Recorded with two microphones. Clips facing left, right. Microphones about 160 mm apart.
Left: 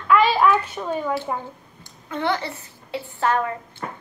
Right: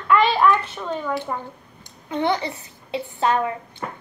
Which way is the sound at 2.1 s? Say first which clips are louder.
Right 2 dB; 20° right (ahead or behind).